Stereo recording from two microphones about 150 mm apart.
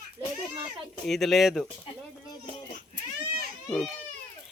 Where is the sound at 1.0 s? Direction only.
Centre (ahead or behind).